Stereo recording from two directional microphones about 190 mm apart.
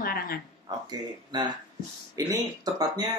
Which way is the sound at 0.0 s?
50° left (ahead or behind).